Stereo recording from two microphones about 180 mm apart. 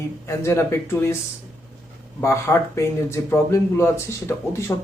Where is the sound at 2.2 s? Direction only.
15° left (ahead or behind).